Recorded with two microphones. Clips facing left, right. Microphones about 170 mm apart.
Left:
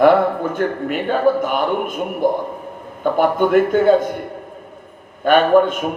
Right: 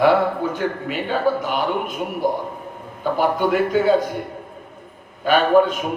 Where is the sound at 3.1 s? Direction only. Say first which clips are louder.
Left 4 dB; 50° left (ahead or behind).